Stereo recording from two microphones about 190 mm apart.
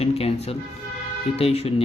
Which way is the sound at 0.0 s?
35° left (ahead or behind).